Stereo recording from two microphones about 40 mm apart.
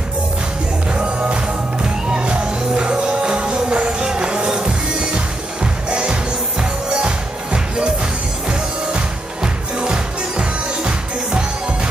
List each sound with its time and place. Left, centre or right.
0.9 s music: right